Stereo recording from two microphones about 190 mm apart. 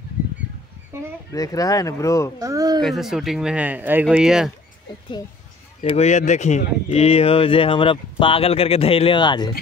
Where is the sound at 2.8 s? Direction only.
Centre (ahead or behind).